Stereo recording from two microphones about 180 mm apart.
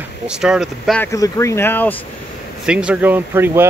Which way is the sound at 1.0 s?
20° left (ahead or behind).